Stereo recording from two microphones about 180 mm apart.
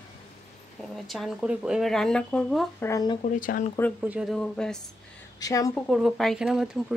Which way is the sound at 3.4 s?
50° left (ahead or behind).